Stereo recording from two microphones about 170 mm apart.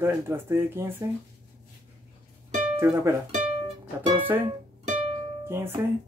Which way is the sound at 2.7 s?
15° right (ahead or behind).